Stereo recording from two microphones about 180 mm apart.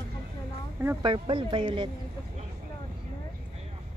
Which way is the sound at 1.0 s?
30° right (ahead or behind).